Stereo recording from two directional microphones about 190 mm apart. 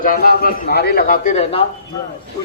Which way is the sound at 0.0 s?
50° left (ahead or behind).